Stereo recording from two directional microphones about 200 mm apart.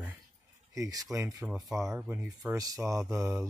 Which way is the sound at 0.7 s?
15° right (ahead or behind).